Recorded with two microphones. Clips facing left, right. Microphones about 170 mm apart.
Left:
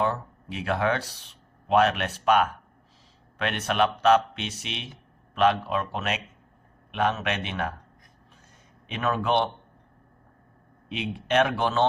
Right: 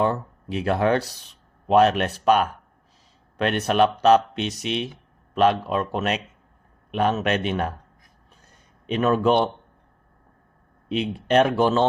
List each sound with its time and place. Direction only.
0.0 s speech: 45° right (ahead or behind)
8.9 s speech: 40° right (ahead or behind)
10.8 s speech: 35° right (ahead or behind)